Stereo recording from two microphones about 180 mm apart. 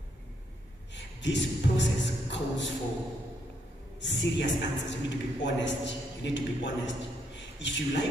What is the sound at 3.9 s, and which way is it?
A man's voice, 85° left.